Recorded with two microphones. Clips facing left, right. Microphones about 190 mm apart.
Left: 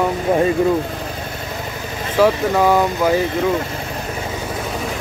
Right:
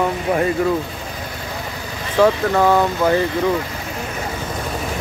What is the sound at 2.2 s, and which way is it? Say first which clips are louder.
Speech: even; 15° left (ahead or behind).